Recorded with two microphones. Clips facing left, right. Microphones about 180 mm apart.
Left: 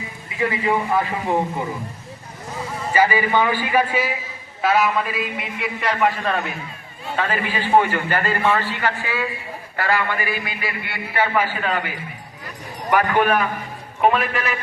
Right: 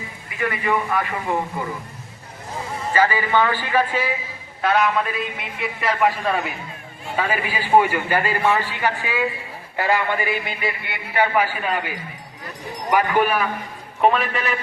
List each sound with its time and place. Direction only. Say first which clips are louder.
0.3 s a man's voice: left 2 dB; 25° left (ahead or behind)
2.9 s a man's voice: left 1 dB; 10° left (ahead or behind); by 11.8 s 10° right (ahead or behind)
12.9 s a man's voice: left 1 dB; 10° right (ahead or behind)
14.0 s a man's voice: even; centre (ahead or behind)